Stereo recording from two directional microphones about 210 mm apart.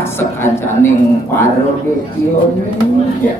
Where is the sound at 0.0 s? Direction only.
10° left (ahead or behind).